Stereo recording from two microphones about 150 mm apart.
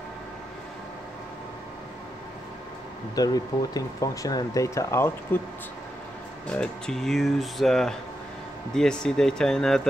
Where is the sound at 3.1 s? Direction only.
25° left (ahead or behind).